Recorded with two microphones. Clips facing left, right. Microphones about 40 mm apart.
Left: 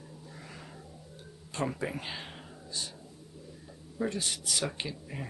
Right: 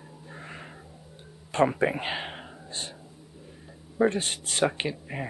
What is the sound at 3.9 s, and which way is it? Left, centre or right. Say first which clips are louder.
Speech: right 9 dB; right.